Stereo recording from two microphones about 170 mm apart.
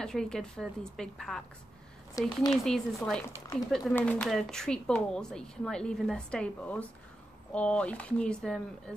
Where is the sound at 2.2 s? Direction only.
20° left (ahead or behind).